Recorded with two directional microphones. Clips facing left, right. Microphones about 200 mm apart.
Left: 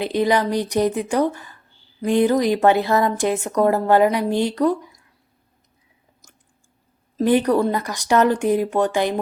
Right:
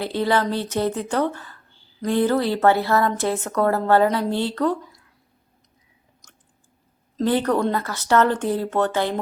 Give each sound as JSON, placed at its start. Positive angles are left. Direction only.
{"t": 0.0, "sound": "a woman's voice", "side_deg": 15}
{"t": 7.2, "sound": "a woman's voice", "side_deg": 10}